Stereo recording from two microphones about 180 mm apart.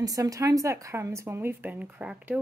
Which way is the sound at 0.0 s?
20° right (ahead or behind).